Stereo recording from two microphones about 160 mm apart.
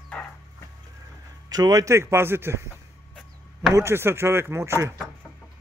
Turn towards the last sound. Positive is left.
turn(degrees=-15)  # may be behind; listen again after turning